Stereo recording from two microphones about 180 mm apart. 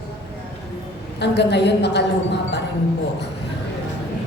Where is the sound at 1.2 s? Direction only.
70° left (ahead or behind).